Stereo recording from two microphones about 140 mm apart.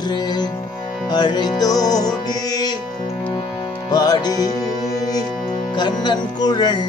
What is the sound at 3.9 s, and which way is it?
Music, 30° left (ahead or behind).